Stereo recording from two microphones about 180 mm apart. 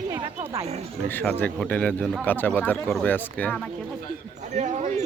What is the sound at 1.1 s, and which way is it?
Speech, 10° left (ahead or behind).